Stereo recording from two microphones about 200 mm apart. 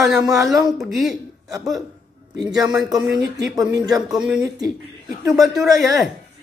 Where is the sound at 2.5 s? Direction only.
15° right (ahead or behind).